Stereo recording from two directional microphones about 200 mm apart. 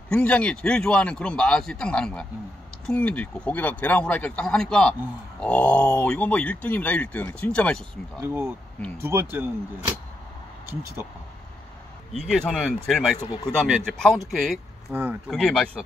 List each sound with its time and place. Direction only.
0.1 s speech: 5° left (ahead or behind)
8.2 s speech: 10° right (ahead or behind)
12.3 s speech: 5° left (ahead or behind)
13.2 s speech: 20° left (ahead or behind)
13.7 s speech: centre (ahead or behind)
14.9 s speech: 10° right (ahead or behind)
15.2 s speech: centre (ahead or behind)